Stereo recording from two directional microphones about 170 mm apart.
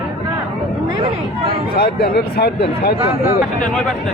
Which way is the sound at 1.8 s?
65° left (ahead or behind).